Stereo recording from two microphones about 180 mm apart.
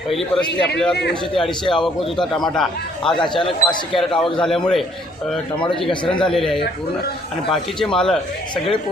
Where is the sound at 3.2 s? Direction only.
25° left (ahead or behind).